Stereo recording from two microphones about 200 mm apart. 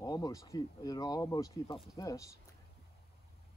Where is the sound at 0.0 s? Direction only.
20° left (ahead or behind).